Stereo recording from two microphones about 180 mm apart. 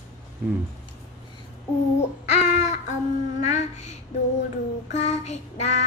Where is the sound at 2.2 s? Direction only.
40° left (ahead or behind).